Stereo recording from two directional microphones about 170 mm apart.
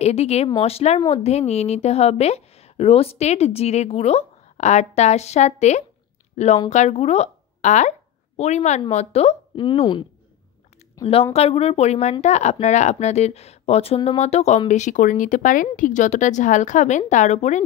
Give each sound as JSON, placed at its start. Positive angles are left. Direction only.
{"t": 0.0, "sound": "speech", "side_deg": 40}
{"t": 11.3, "sound": "speech", "side_deg": 35}